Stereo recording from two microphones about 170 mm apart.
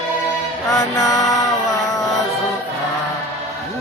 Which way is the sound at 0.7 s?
15° left (ahead or behind).